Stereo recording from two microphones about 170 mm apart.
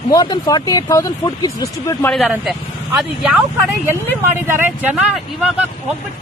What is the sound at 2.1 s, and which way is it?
Speech, centre (ahead or behind).